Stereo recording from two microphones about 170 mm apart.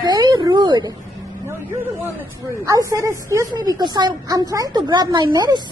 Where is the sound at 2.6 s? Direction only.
20° right (ahead or behind).